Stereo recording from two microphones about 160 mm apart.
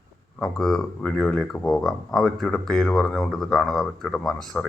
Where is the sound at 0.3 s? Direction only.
5° left (ahead or behind).